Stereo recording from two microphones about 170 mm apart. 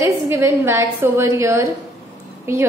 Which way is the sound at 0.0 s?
15° right (ahead or behind).